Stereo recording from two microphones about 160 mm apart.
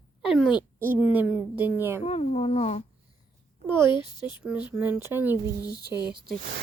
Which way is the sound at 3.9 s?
30° left (ahead or behind).